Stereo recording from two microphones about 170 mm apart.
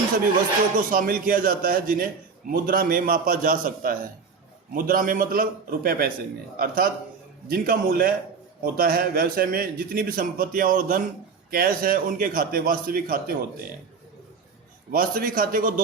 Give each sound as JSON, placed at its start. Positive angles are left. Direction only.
{"t": 0.8, "sound": "a man's voice", "side_deg": -55}
{"t": 14.9, "sound": "a man's voice", "side_deg": -55}